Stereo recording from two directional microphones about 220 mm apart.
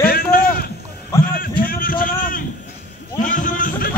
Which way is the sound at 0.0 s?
40° left (ahead or behind).